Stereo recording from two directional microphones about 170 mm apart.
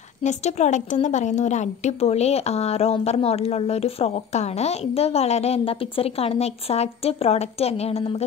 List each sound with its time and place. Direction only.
0.2 s a woman's voice: 45° left (ahead or behind)